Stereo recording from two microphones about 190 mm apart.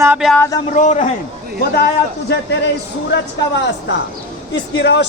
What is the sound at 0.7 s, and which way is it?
Speech, 40° left (ahead or behind).